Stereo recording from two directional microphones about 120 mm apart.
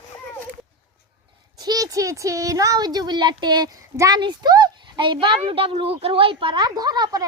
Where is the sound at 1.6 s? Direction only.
30° right (ahead or behind).